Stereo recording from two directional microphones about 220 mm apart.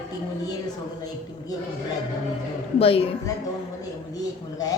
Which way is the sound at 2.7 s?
25° left (ahead or behind).